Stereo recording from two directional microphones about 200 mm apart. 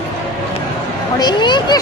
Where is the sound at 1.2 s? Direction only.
20° left (ahead or behind).